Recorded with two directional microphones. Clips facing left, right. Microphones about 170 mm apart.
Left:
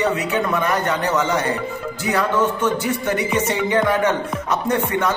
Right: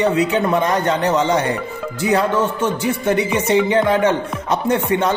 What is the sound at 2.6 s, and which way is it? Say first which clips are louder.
Music: right 2 dB; 15° right (ahead or behind).